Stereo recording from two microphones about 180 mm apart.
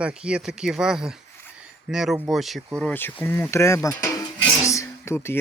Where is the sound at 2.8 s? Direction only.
10° left (ahead or behind).